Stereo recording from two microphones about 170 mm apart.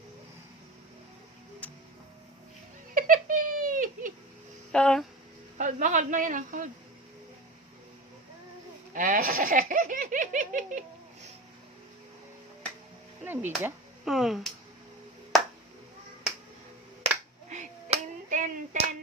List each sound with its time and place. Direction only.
2.9 s giggle: 50° right (ahead or behind)
4.7 s speech: 5° left (ahead or behind)
5.5 s a man's voice: 45° right (ahead or behind)
8.9 s speech: 50° right (ahead or behind)
13.2 s speech: 10° right (ahead or behind)
14.0 s speech: centre (ahead or behind)
17.5 s clapping: 45° right (ahead or behind)